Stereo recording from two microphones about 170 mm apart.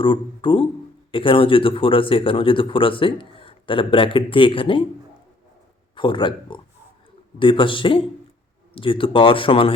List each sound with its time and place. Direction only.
0.0 s speech: 30° left (ahead or behind)
5.9 s speech: 30° left (ahead or behind)